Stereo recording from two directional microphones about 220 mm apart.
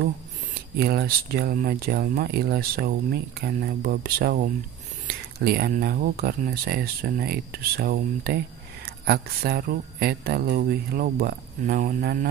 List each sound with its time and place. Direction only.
0.7 s speech: 45° right (ahead or behind)